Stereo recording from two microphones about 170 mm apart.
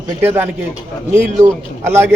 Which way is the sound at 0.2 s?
10° right (ahead or behind).